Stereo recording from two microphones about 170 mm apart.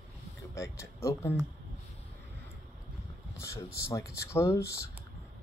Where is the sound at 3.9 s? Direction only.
15° left (ahead or behind).